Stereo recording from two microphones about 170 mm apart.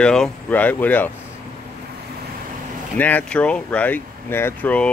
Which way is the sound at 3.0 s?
10° left (ahead or behind).